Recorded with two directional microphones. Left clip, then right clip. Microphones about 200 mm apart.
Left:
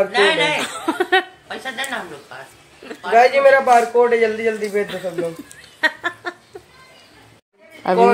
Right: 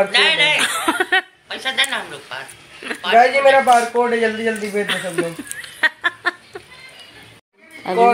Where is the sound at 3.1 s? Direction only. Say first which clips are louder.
Even; 20° left (ahead or behind).